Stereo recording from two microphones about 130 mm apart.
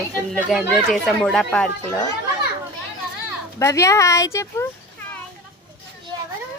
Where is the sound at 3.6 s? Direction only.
25° left (ahead or behind).